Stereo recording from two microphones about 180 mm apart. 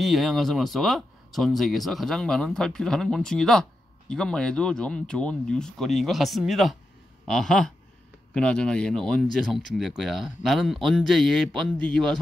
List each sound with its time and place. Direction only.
0.0 s speech: centre (ahead or behind)